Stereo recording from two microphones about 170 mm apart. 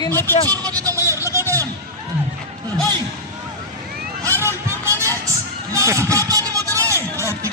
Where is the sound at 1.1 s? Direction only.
15° right (ahead or behind).